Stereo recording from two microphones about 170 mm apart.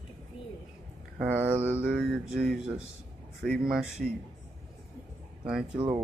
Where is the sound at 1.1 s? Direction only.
10° right (ahead or behind).